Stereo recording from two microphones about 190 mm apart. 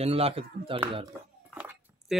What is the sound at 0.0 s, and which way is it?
Speech, 30° right (ahead or behind).